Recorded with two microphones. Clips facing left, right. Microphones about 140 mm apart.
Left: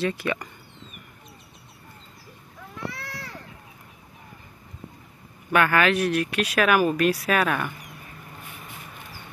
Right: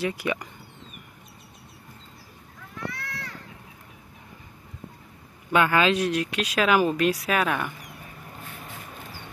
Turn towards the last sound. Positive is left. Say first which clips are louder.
# left 1 dB
turn(degrees=-15)  # may be behind; listen again after turning